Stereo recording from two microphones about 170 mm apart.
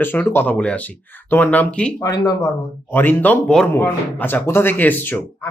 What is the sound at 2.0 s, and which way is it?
Speech, 20° left (ahead or behind).